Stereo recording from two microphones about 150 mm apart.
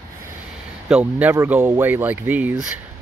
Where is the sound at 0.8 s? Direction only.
5° right (ahead or behind).